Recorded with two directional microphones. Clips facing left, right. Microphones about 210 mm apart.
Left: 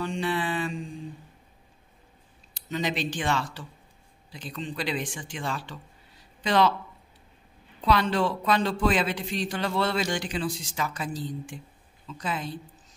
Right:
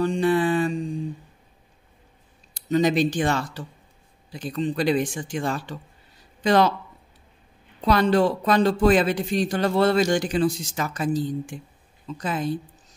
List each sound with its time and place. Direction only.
0.0 s mantra: 45° right (ahead or behind)
2.7 s speech: 45° right (ahead or behind)
7.8 s speech: 45° right (ahead or behind)